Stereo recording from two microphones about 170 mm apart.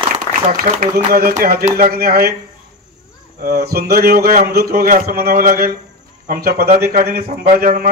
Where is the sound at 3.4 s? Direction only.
65° right (ahead or behind).